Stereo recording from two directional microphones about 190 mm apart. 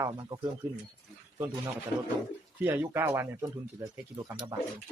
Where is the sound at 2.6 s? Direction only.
10° right (ahead or behind).